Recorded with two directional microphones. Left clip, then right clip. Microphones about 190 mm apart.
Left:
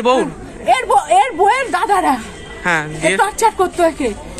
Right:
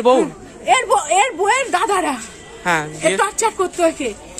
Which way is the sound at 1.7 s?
35° right (ahead or behind).